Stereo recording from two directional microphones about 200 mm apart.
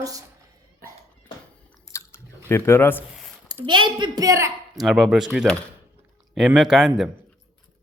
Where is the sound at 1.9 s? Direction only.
10° left (ahead or behind).